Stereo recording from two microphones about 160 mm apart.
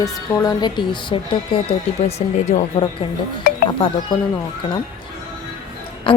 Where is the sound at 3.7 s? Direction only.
30° left (ahead or behind).